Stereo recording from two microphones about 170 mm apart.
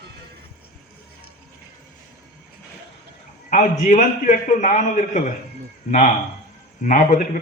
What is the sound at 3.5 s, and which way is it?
A man's voice, 50° left (ahead or behind).